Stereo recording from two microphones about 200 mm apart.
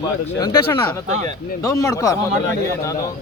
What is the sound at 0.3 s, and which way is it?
Speech, 20° left (ahead or behind).